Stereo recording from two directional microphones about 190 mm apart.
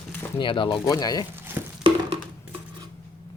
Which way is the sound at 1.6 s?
10° right (ahead or behind).